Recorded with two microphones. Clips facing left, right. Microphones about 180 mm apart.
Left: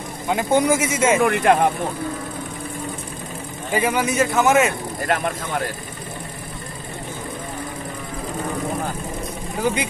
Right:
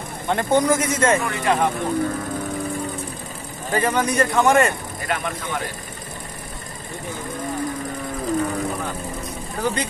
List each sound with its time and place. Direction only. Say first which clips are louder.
0.3 s a man's voice: even; 10° left (ahead or behind)
1.3 s speech: left 5 dB; 55° left (ahead or behind)
3.7 s speech: even; 10° left (ahead or behind)
5.0 s speech: left 4 dB; 45° left (ahead or behind)
9.6 s a man's voice: left 2 dB; 10° left (ahead or behind)